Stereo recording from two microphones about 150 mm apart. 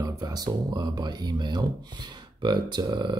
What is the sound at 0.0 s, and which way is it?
Speech, 25° right (ahead or behind).